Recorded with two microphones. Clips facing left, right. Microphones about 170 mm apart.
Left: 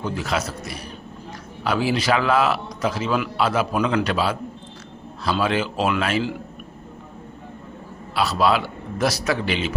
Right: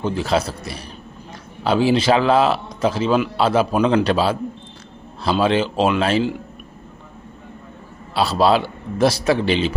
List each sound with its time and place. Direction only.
0.0 s a man's voice: 30° right (ahead or behind)
8.1 s a man's voice: 30° right (ahead or behind)